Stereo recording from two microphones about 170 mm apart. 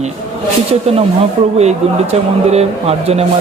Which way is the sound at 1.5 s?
40° right (ahead or behind).